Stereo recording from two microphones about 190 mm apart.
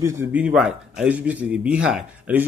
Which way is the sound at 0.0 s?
10° right (ahead or behind).